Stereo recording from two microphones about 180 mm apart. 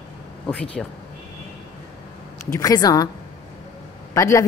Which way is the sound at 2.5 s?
20° left (ahead or behind).